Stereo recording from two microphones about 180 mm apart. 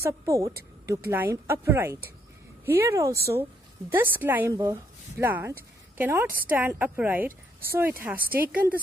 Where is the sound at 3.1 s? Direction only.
60° right (ahead or behind).